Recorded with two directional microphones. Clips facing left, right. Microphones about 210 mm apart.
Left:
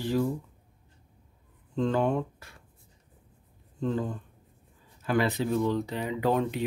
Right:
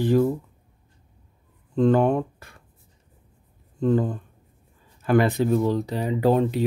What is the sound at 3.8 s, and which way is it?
Speech, 55° right (ahead or behind).